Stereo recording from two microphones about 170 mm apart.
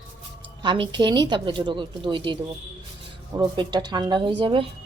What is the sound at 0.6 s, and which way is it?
A woman's voice, 30° right (ahead or behind).